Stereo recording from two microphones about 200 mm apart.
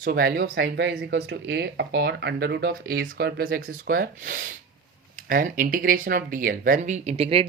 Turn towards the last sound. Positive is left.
turn(degrees=-30)  # may be behind; listen again after turning